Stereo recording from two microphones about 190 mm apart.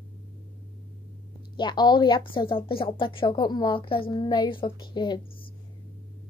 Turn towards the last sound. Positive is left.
turn(degrees=25)  # may be behind; listen again after turning